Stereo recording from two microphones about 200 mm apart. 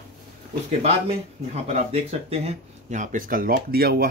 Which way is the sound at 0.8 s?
30° right (ahead or behind).